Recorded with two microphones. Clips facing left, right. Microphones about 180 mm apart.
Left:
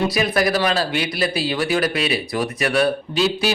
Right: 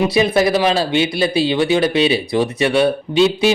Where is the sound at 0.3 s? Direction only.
25° right (ahead or behind).